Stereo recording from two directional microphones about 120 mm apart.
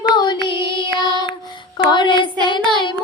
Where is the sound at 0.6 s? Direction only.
30° right (ahead or behind).